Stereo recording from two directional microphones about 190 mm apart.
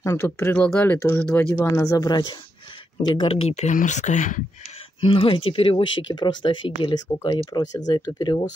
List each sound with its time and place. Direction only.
0.0 s speech: 15° left (ahead or behind); by 4.4 s 40° left (ahead or behind)
5.0 s speech: 30° left (ahead or behind)